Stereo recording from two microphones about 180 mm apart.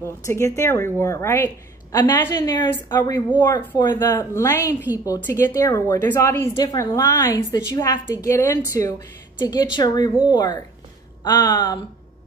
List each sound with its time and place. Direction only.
0.0 s a woman's voice: 15° left (ahead or behind)